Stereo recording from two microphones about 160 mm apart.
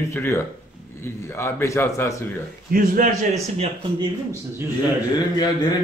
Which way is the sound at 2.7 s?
65° right (ahead or behind).